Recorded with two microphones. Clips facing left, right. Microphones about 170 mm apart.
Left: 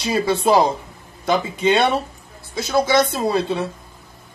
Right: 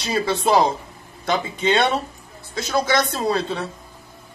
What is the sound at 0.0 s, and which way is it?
Speech, 10° left (ahead or behind).